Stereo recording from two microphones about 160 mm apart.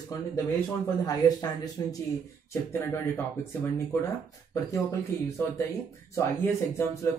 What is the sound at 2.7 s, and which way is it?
Speech, 15° left (ahead or behind).